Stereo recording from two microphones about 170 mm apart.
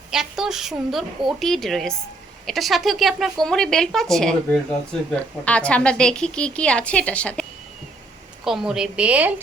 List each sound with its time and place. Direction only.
0.1 s a woman's voice: 5° right (ahead or behind)
8.4 s a woman's voice: 5° right (ahead or behind)